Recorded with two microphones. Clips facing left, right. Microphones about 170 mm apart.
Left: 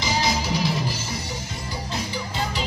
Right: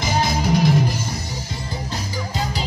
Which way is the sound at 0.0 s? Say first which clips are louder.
Right 3 dB; 50° right (ahead or behind).